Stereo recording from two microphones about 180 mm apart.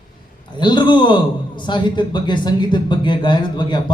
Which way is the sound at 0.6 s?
25° left (ahead or behind).